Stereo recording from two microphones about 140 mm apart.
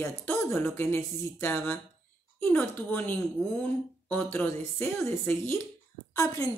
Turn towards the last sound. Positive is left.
turn(degrees=25)  # may be behind; listen again after turning